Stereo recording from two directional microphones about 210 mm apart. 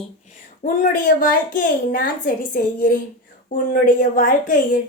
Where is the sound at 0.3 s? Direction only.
35° left (ahead or behind).